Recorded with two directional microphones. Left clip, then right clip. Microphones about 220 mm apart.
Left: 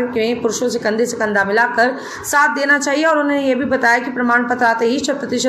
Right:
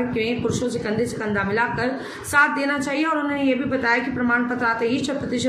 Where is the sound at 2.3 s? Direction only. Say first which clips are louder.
Left 4 dB; centre (ahead or behind).